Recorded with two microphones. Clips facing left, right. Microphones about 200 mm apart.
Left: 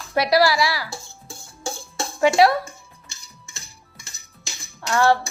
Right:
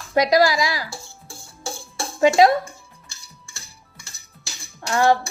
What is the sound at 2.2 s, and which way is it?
Speech, 20° right (ahead or behind).